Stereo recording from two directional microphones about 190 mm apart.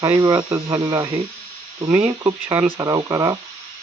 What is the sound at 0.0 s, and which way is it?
Speech, 15° right (ahead or behind).